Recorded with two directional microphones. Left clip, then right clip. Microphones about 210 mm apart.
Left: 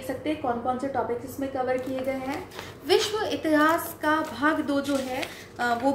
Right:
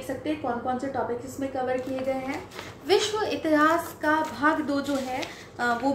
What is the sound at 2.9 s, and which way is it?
A woman's voice, 5° left (ahead or behind).